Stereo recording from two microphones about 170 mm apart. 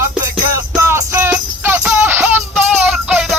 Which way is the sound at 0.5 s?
15° right (ahead or behind).